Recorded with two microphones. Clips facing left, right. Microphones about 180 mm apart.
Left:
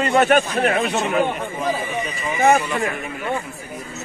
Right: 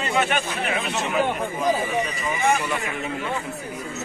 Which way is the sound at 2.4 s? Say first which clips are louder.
Left 7 dB; 55° left (ahead or behind).